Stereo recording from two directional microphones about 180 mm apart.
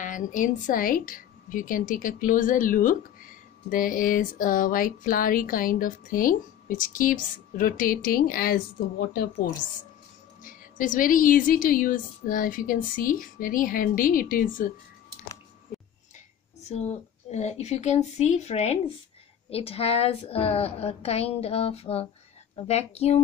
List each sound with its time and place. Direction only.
0.0 s a woman's voice: 45° left (ahead or behind)
10.4 s a woman's voice: 45° left (ahead or behind)
16.6 s a woman's voice: 40° left (ahead or behind)